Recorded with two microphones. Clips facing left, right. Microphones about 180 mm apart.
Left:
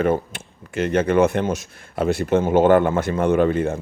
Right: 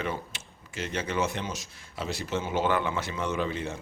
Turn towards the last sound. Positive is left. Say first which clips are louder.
# left 12 dB
turn(degrees=55)  # may be behind; listen again after turning